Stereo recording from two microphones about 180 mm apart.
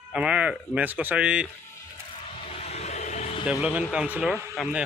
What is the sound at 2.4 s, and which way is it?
Vehicle, 35° left (ahead or behind).